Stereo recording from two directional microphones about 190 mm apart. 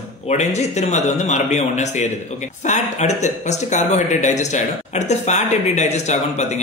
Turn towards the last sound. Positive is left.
turn(degrees=35)  # may be behind; listen again after turning